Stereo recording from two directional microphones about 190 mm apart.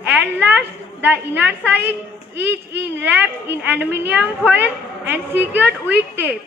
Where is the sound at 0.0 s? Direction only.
5° right (ahead or behind).